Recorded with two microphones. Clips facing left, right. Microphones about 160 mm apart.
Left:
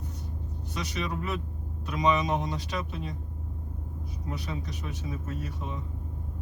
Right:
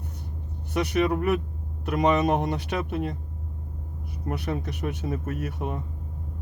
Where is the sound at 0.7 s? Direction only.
60° right (ahead or behind).